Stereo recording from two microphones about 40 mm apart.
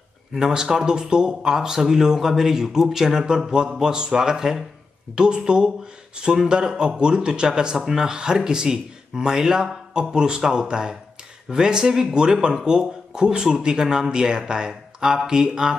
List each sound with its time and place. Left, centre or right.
0.3 s speech: centre